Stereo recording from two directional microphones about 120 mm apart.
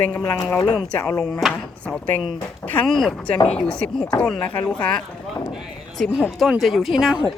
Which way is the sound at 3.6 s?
10° left (ahead or behind).